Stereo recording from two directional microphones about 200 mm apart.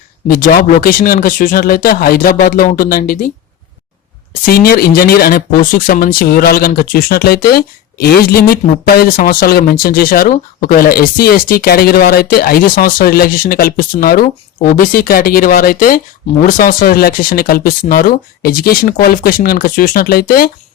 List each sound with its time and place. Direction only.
0.3 s speech: 45° left (ahead or behind)
4.4 s speech: 50° left (ahead or behind)